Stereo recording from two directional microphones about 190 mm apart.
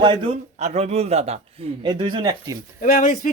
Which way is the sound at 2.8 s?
45° left (ahead or behind).